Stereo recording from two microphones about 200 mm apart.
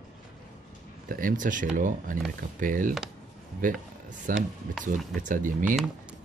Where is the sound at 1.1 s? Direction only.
40° right (ahead or behind).